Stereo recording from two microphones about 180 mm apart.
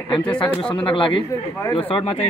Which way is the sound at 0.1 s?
25° left (ahead or behind).